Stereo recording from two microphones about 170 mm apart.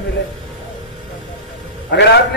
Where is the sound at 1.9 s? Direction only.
90° left.